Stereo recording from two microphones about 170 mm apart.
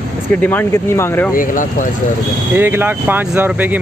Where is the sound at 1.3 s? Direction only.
50° left (ahead or behind).